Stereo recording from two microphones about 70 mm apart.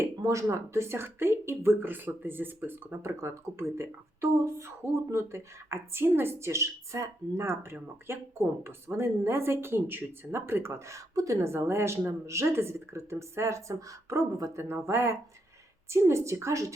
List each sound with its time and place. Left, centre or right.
0.0 s speech: right
11.3 s a woman's voice: right